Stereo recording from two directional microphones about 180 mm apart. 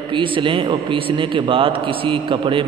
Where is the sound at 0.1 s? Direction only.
30° right (ahead or behind).